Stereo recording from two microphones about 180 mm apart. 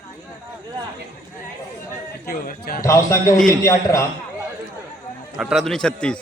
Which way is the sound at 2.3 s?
55° left (ahead or behind).